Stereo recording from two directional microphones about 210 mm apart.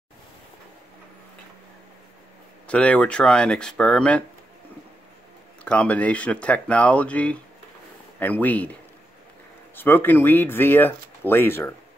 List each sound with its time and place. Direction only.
2.6 s speech: 5° left (ahead or behind)
5.6 s speech: 5° left (ahead or behind)
9.8 s speech: 10° left (ahead or behind)